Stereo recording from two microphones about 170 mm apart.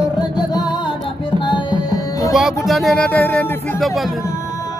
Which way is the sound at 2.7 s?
Centre (ahead or behind).